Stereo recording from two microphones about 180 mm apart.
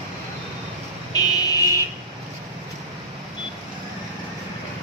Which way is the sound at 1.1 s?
20° left (ahead or behind).